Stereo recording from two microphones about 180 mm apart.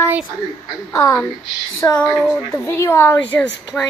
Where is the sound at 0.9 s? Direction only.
15° left (ahead or behind).